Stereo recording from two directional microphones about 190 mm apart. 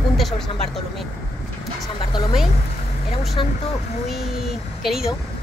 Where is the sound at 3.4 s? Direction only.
25° left (ahead or behind).